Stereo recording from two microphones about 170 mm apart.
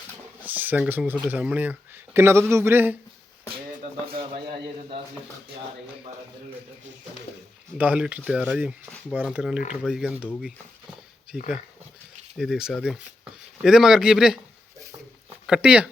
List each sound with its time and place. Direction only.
0.4 s speech: 10° right (ahead or behind)
7.8 s speech: 10° right (ahead or behind)
11.3 s speech: 5° right (ahead or behind)
15.4 s speech: 5° right (ahead or behind)